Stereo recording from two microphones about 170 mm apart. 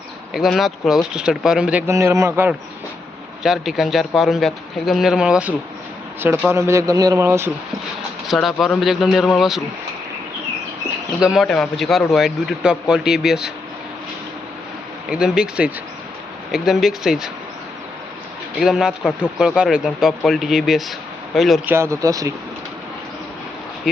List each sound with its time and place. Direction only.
0.3 s a man's voice: centre (ahead or behind)
8.3 s a man's voice: centre (ahead or behind)
11.2 s a man's voice: centre (ahead or behind)
15.1 s a man's voice: 5° right (ahead or behind)
18.5 s a man's voice: centre (ahead or behind)
21.7 s speech: 15° right (ahead or behind)
23.9 s a man's voice: centre (ahead or behind)